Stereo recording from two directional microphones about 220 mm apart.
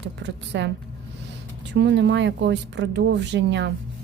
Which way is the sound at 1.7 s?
55° right (ahead or behind).